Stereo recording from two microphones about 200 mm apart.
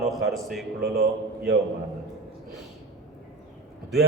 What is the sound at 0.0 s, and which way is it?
Speech, centre (ahead or behind).